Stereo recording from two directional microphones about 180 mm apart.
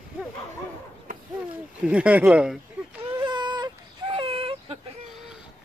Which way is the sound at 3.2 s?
25° right (ahead or behind).